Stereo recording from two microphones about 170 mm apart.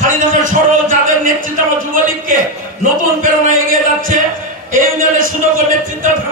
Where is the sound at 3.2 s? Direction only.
50° right (ahead or behind).